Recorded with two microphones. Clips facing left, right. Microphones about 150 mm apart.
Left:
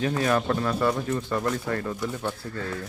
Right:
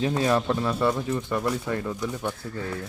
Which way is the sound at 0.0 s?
20° right (ahead or behind).